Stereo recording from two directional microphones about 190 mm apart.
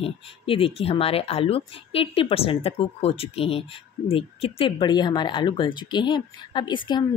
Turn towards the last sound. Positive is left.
turn(degrees=25)  # may be behind; listen again after turning